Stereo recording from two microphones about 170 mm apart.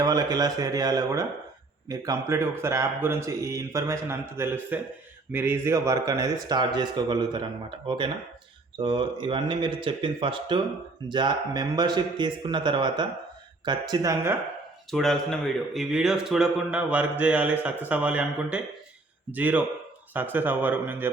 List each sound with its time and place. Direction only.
0.0 s a man's voice: 20° right (ahead or behind)
14.8 s a man's voice: centre (ahead or behind)